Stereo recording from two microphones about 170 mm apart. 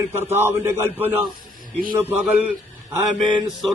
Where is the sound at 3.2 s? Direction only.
25° right (ahead or behind).